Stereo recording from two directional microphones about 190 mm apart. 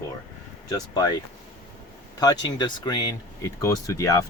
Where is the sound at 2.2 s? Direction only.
20° left (ahead or behind).